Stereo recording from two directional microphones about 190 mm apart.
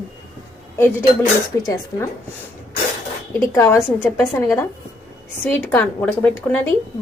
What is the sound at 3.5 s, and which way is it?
A woman's voice, 15° left (ahead or behind).